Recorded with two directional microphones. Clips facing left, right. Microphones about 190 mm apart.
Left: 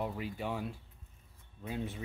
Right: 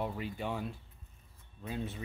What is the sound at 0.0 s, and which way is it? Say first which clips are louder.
Speech: even; 5° left (ahead or behind).